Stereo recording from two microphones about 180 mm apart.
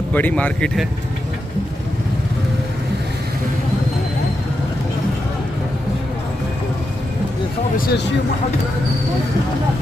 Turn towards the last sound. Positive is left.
turn(degrees=55)  # may be behind; listen again after turning